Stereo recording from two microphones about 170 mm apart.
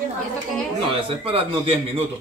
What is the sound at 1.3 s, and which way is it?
Speech, 35° right (ahead or behind).